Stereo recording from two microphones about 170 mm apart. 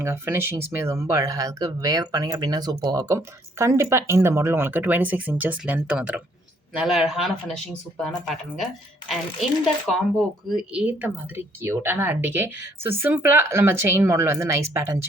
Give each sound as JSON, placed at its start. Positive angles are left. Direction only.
{"t": 0.0, "sound": "speech", "side_deg": -15}
{"t": 10.5, "sound": "speech", "side_deg": -5}